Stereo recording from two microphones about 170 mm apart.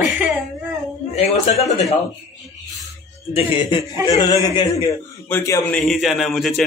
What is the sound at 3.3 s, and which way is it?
A man's voice, 30° left (ahead or behind).